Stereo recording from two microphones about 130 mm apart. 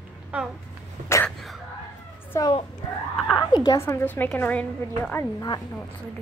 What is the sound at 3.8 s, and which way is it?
A woman's voice, 20° left (ahead or behind).